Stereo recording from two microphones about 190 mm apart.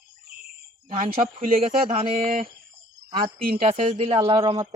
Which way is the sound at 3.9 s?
30° right (ahead or behind).